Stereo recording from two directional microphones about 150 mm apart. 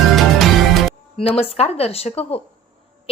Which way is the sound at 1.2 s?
40° left (ahead or behind).